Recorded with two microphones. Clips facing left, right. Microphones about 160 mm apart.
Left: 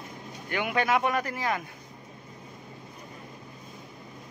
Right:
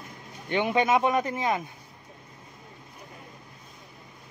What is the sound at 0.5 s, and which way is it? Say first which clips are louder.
Speech: right 3 dB; 25° right (ahead or behind).